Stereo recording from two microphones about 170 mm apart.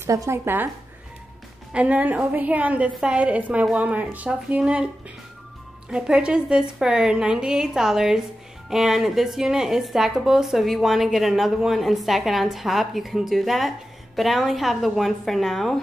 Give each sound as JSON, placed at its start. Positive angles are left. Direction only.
{"t": 0.0, "sound": "a woman's voice", "side_deg": -15}
{"t": 1.7, "sound": "a woman's voice", "side_deg": -10}
{"t": 5.9, "sound": "a woman's voice", "side_deg": -5}